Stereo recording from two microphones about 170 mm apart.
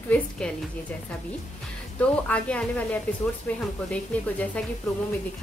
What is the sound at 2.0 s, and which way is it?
A woman's voice, 10° left (ahead or behind).